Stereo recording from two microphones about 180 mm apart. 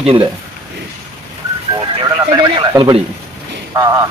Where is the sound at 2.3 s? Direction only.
25° right (ahead or behind).